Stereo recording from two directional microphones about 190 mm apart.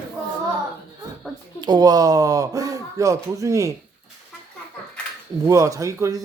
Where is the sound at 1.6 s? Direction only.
20° right (ahead or behind).